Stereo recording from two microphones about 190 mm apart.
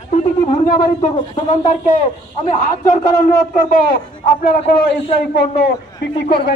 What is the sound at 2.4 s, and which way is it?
A man's voice, 40° left (ahead or behind).